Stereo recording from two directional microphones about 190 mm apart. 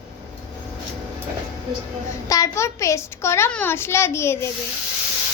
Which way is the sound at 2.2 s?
15° left (ahead or behind).